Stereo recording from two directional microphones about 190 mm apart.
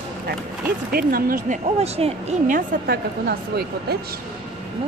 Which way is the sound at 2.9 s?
55° right (ahead or behind).